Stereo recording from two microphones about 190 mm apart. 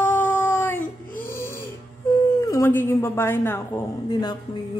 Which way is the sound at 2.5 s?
10° left (ahead or behind).